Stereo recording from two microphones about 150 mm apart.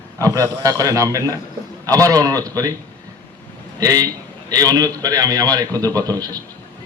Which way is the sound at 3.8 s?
25° right (ahead or behind).